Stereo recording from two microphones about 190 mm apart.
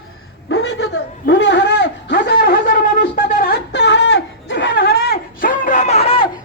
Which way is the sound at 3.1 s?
40° left (ahead or behind).